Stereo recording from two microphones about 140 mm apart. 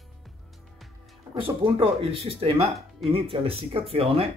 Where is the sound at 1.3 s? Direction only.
40° right (ahead or behind).